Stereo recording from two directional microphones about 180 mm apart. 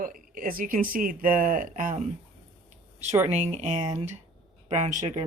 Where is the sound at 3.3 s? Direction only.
40° right (ahead or behind).